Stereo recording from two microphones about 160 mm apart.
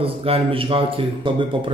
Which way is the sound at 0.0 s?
35° right (ahead or behind).